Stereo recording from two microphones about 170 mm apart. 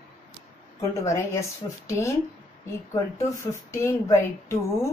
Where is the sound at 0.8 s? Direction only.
20° left (ahead or behind).